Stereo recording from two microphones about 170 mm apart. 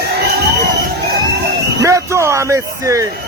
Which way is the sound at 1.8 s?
20° right (ahead or behind).